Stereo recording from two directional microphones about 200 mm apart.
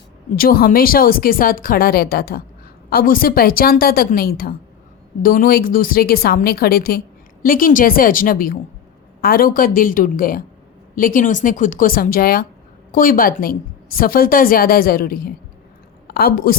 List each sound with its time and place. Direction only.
0.3 s a woman's voice: 45° left (ahead or behind)